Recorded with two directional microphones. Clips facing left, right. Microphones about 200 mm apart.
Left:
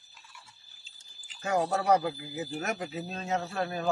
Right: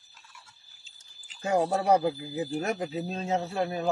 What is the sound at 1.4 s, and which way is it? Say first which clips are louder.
Speech: right 3 dB; 25° right (ahead or behind).